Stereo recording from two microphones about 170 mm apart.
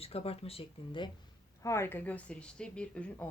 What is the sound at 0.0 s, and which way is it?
A woman's voice, 35° left (ahead or behind).